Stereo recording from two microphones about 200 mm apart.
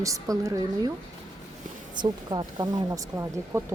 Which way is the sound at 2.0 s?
20° right (ahead or behind).